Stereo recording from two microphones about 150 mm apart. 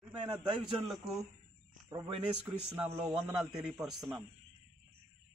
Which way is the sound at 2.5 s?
10° right (ahead or behind).